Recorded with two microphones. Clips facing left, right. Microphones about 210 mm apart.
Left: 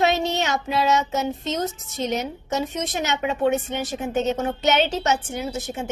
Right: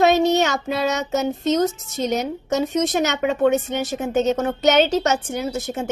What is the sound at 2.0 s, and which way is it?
A woman's voice, 40° right (ahead or behind).